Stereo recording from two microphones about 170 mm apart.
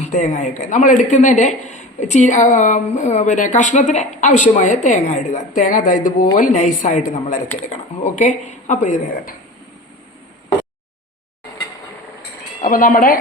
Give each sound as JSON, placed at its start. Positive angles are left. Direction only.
{"t": 0.0, "sound": "speech", "side_deg": 45}
{"t": 12.6, "sound": "a woman's voice", "side_deg": 55}